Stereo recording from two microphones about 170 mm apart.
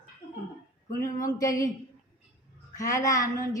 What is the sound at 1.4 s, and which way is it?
Speech, 20° left (ahead or behind).